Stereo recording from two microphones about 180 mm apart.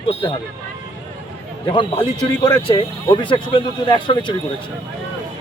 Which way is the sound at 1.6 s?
30° left (ahead or behind).